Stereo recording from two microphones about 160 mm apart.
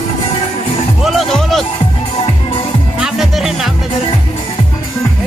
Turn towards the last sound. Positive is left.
turn(degrees=0)  # may be behind; listen again after turning